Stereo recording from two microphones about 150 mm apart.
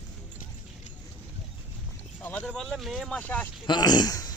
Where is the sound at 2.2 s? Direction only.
10° left (ahead or behind).